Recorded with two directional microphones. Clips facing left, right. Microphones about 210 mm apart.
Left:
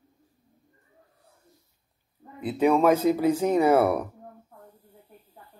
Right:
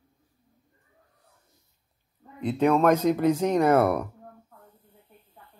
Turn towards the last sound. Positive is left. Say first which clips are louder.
# even
turn(degrees=10)  # may be behind; listen again after turning